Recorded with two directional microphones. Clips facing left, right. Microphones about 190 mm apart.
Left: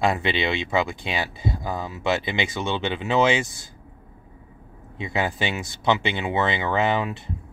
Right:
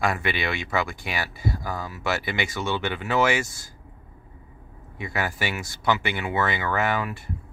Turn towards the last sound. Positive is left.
turn(degrees=20)  # may be behind; listen again after turning